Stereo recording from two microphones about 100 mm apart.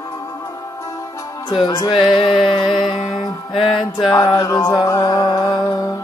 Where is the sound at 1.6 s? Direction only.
40° left (ahead or behind).